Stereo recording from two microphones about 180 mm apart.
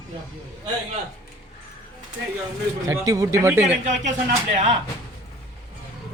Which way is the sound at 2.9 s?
20° right (ahead or behind).